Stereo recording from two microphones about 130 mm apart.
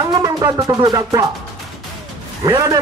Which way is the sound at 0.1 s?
25° right (ahead or behind).